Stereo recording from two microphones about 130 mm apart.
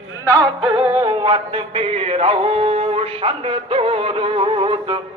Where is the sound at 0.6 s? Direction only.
45° right (ahead or behind).